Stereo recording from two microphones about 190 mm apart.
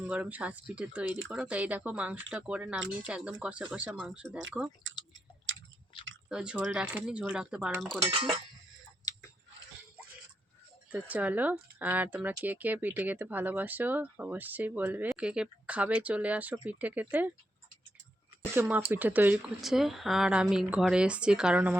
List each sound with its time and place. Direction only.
0.0 s speech: 10° right (ahead or behind)
5.5 s chewing: 90° right
6.2 s speech: 5° right (ahead or behind)
8.1 s speech: 30° right (ahead or behind)
9.1 s chewing: 20° left (ahead or behind)
10.9 s speech: 10° right (ahead or behind)
18.5 s speech: 10° right (ahead or behind)